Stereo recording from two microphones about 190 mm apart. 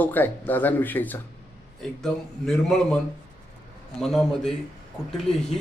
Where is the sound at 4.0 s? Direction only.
Centre (ahead or behind).